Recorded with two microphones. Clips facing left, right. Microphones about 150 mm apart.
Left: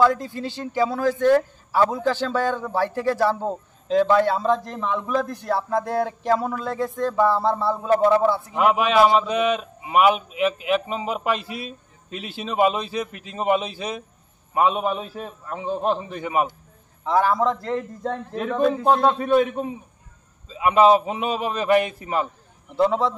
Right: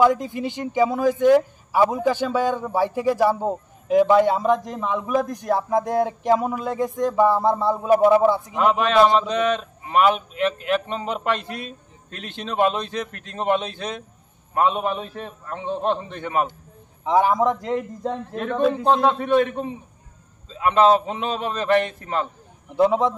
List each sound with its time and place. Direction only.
0.0 s a man's voice: 15° right (ahead or behind)
8.5 s a man's voice: 10° left (ahead or behind)
17.0 s a man's voice: 15° right (ahead or behind)
18.3 s a man's voice: 5° left (ahead or behind)
22.8 s a man's voice: 15° right (ahead or behind)